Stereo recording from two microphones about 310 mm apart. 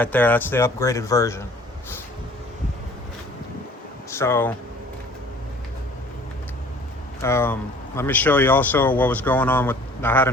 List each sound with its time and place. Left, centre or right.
0.0 s speech: centre
4.1 s speech: centre
7.2 s speech: centre